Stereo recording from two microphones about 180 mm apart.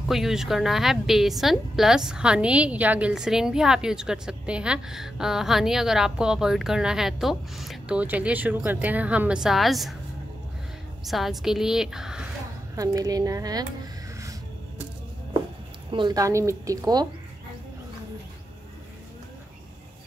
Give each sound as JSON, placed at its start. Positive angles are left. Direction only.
{"t": 0.1, "sound": "a woman's voice", "side_deg": 0}
{"t": 11.1, "sound": "a woman's voice", "side_deg": 0}
{"t": 12.7, "sound": "a woman's voice", "side_deg": -20}
{"t": 15.9, "sound": "a woman's voice", "side_deg": -25}